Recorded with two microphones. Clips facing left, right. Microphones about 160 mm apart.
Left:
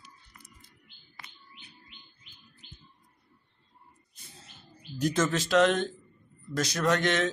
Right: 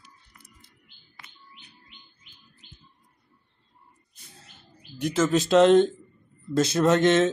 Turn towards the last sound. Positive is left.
turn(degrees=-25)  # may be behind; listen again after turning